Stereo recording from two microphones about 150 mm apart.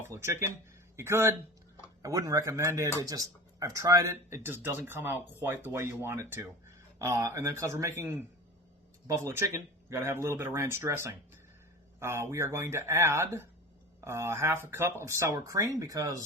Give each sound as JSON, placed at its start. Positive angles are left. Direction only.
{"t": 0.0, "sound": "speech", "side_deg": -15}